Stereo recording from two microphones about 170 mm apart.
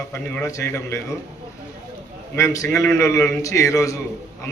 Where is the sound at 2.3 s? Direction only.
20° left (ahead or behind).